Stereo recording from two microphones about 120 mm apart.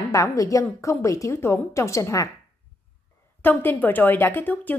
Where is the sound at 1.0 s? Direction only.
25° left (ahead or behind).